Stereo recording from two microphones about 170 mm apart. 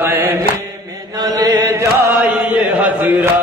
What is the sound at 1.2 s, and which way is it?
Chant, 25° right (ahead or behind).